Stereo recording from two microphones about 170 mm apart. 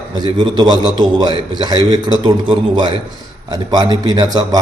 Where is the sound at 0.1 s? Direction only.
25° right (ahead or behind).